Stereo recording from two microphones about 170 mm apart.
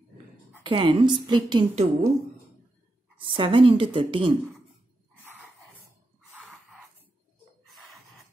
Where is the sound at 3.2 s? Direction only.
30° right (ahead or behind).